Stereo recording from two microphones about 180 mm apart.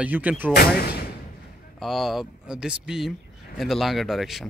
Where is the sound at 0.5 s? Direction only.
60° left (ahead or behind).